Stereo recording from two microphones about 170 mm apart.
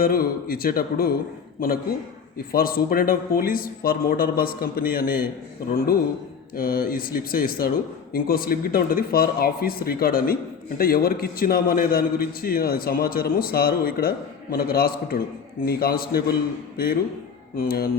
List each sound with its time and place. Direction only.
0.0 s a man's voice: 60° left (ahead or behind)